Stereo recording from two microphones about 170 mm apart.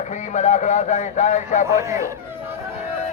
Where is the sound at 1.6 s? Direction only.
15° right (ahead or behind).